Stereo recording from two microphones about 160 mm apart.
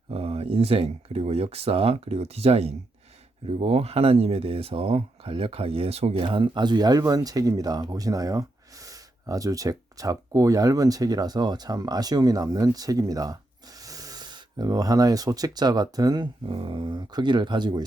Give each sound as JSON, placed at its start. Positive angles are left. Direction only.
{"t": 0.1, "sound": "speech", "side_deg": -40}